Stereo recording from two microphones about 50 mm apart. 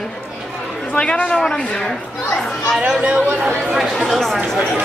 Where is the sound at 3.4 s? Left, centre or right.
Centre.